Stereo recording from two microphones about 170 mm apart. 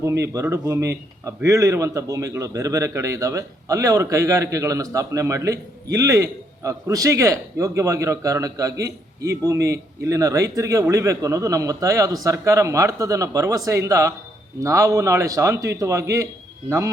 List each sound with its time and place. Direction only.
0.0 s a man's voice: 15° right (ahead or behind)